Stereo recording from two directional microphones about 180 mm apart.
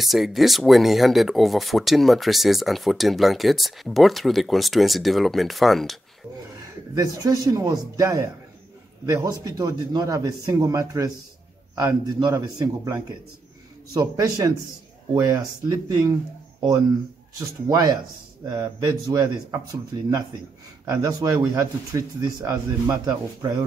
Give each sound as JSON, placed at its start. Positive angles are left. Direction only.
{"t": 0.0, "sound": "speech", "side_deg": 0}
{"t": 7.0, "sound": "speech", "side_deg": -20}
{"t": 17.6, "sound": "speech", "side_deg": -20}